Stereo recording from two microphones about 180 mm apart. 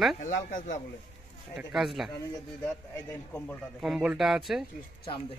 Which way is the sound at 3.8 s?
5° right (ahead or behind).